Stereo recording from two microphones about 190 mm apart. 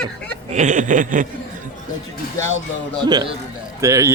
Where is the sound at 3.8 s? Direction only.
15° right (ahead or behind).